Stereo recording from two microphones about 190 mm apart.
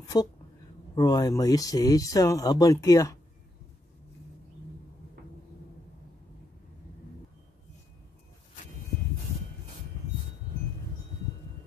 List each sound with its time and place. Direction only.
0.1 s speech: 20° left (ahead or behind)